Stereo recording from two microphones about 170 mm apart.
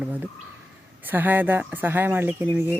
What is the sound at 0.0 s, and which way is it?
Speech, 10° right (ahead or behind).